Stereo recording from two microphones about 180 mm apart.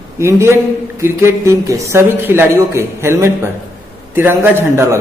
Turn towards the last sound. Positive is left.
turn(degrees=-15)  # may be behind; listen again after turning